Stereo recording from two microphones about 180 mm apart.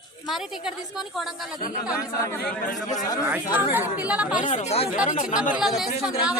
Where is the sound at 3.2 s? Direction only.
10° right (ahead or behind).